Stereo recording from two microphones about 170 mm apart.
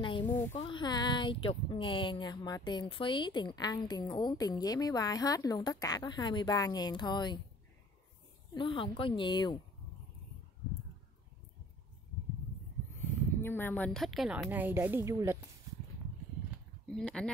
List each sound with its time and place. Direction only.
0.0 s a sound: 30° left (ahead or behind)
0.6 s speech: 30° left (ahead or behind)
8.5 s speech: 30° left (ahead or behind)
13.0 s a woman's voice: 10° left (ahead or behind); by 15.3 s 15° right (ahead or behind)
16.9 s speech: 5° left (ahead or behind)